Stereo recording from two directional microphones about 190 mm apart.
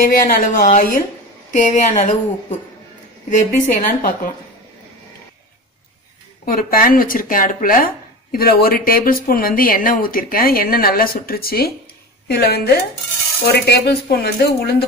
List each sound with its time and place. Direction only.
0.0 s speech: 50° left (ahead or behind)
3.3 s speech: 45° left (ahead or behind)
6.4 s speech: 50° left (ahead or behind)